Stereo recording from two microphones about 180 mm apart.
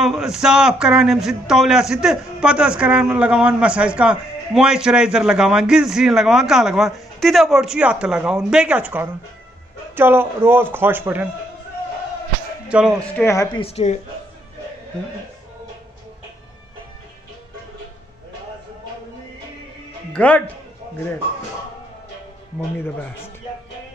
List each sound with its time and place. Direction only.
0.0 s a man's voice: centre (ahead or behind)
12.6 s speech: 5° right (ahead or behind)
13.0 s a man's voice: 15° left (ahead or behind)
13.6 s a woman's voice: 35° left (ahead or behind)
20.1 s speech: 5° left (ahead or behind)